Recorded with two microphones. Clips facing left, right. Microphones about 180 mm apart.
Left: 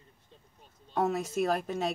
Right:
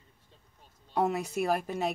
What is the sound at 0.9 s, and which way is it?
Speech, 15° right (ahead or behind).